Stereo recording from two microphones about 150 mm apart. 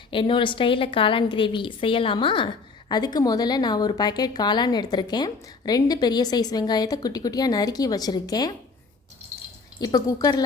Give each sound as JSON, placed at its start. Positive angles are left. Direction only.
{"t": 0.1, "sound": "a woman's voice", "side_deg": 35}
{"t": 9.7, "sound": "a woman's voice", "side_deg": 25}